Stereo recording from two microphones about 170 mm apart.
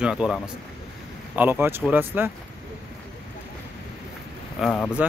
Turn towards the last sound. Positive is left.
turn(degrees=5)  # may be behind; listen again after turning